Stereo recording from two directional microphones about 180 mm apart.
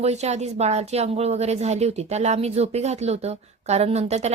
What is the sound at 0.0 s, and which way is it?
Speech, 35° right (ahead or behind).